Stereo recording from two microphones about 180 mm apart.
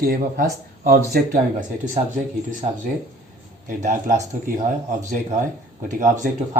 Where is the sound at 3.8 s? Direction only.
40° right (ahead or behind).